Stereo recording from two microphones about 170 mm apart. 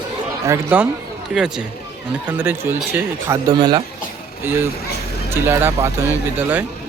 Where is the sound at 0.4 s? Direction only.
15° right (ahead or behind).